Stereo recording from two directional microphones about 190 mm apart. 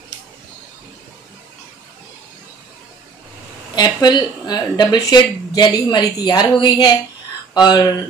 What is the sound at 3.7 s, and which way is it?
A woman's voice, 20° left (ahead or behind).